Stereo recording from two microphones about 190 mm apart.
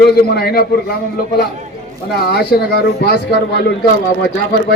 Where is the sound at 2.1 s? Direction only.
55° left (ahead or behind).